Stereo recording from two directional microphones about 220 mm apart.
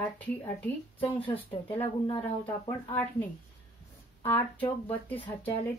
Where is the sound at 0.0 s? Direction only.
5° left (ahead or behind).